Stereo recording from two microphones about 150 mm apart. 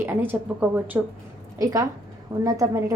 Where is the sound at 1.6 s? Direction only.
25° right (ahead or behind).